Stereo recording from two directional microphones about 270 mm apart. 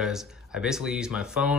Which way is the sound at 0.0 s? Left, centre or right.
Centre.